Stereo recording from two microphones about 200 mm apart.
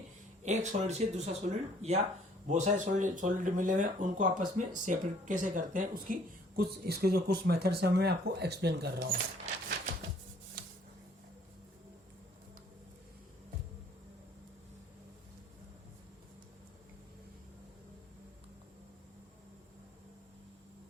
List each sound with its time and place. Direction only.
0.4 s speech: 35° right (ahead or behind); by 9.2 s 55° right (ahead or behind)